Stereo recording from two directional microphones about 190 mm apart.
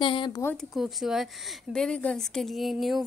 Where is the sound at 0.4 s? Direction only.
10° left (ahead or behind).